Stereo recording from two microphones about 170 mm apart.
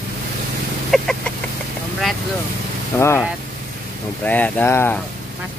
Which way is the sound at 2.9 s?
15° left (ahead or behind).